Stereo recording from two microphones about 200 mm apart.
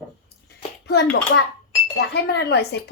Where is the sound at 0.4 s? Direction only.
55° left (ahead or behind).